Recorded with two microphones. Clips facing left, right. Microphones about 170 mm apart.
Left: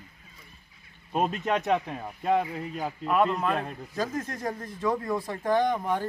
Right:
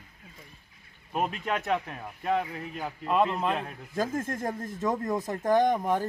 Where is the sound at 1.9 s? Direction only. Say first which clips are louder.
Left 3 dB; 20° left (ahead or behind).